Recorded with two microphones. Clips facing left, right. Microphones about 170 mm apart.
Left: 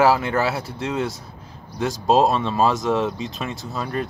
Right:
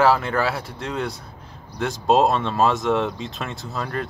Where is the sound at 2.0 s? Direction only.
Centre (ahead or behind).